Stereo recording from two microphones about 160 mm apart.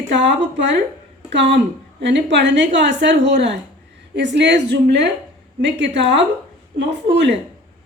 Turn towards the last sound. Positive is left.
turn(degrees=-90)